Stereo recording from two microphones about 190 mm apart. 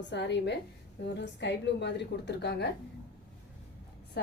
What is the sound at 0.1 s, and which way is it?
A woman's voice, 65° left (ahead or behind).